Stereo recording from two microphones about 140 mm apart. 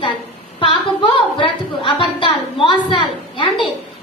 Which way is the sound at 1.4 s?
35° left (ahead or behind).